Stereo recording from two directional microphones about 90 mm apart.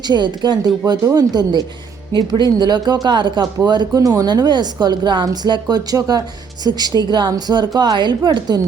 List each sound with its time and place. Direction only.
0.1 s a woman's voice: 55° right (ahead or behind)